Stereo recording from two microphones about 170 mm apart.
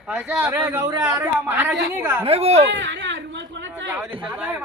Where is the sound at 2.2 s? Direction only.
35° right (ahead or behind).